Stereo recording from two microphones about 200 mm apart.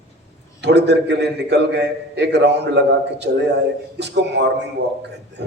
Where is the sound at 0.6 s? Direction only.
60° right (ahead or behind).